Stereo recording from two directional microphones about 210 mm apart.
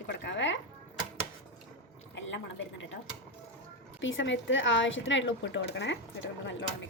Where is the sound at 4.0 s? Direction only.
65° left (ahead or behind).